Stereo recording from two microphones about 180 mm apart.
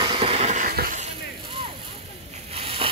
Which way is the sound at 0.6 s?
50° right (ahead or behind).